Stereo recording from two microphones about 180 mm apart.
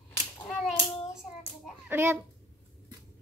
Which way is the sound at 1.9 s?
10° right (ahead or behind).